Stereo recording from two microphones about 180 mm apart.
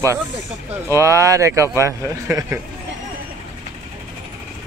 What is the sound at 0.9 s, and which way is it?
Speech, 15° right (ahead or behind).